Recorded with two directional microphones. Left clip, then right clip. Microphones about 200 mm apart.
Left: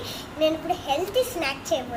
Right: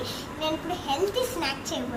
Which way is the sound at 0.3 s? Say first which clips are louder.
Left 7 dB; 55° left (ahead or behind).